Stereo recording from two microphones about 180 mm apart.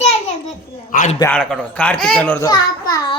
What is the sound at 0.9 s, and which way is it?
Speech, 45° left (ahead or behind).